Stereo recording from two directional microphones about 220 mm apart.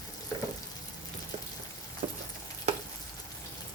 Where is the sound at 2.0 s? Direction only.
30° right (ahead or behind).